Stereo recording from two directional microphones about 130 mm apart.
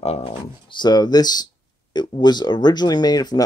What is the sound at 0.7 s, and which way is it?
Speech, 35° left (ahead or behind).